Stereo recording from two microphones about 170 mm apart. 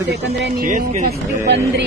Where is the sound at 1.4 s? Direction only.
75° right (ahead or behind).